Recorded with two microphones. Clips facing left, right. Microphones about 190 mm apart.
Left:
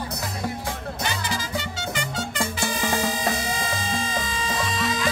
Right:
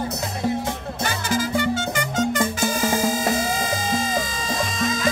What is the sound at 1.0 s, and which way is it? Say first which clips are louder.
Music: right 7 dB; 50° right (ahead or behind).